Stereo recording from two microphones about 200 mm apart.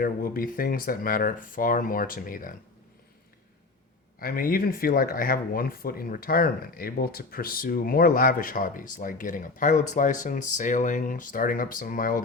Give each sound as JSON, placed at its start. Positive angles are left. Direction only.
{"t": 0.0, "sound": "speech", "side_deg": 45}
{"t": 4.2, "sound": "speech", "side_deg": 45}